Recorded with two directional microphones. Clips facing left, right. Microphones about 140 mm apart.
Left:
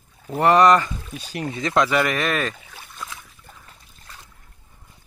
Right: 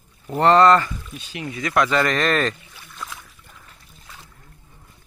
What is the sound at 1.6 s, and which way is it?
Speech, 20° left (ahead or behind).